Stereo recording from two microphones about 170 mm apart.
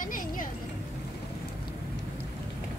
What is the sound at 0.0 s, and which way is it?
Vehicle, 55° left (ahead or behind).